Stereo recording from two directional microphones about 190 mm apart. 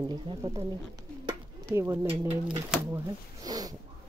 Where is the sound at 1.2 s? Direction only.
15° right (ahead or behind).